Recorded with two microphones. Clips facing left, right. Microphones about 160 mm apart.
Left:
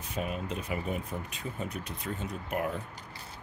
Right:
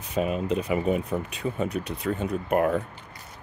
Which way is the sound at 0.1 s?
90° right.